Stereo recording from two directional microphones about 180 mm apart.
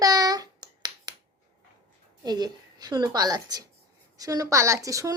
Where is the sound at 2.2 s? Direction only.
20° right (ahead or behind).